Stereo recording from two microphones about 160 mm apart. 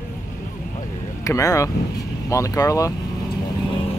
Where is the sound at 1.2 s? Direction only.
20° left (ahead or behind).